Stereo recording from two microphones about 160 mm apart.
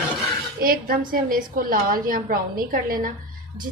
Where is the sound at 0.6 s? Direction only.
65° right (ahead or behind).